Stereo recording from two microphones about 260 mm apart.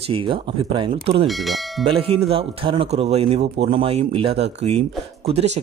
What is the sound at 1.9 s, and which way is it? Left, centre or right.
Speech, right.